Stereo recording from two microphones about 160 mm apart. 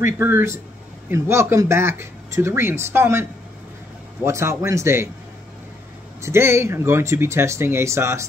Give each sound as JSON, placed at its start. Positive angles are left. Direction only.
{"t": 0.0, "sound": "speech", "side_deg": -15}
{"t": 6.2, "sound": "speech", "side_deg": -15}